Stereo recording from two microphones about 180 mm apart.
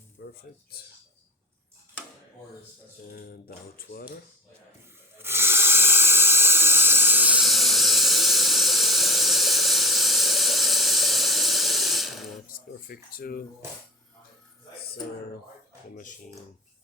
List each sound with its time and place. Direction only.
0.2 s a sound: 65° left (ahead or behind)
0.7 s speech: 60° left (ahead or behind)
3.1 s speech: 55° left (ahead or behind)
5.1 s hiss: 15° right (ahead or behind)
12.5 s speech: 55° left (ahead or behind)